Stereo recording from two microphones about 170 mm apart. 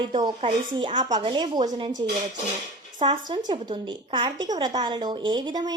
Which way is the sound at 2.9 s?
30° right (ahead or behind).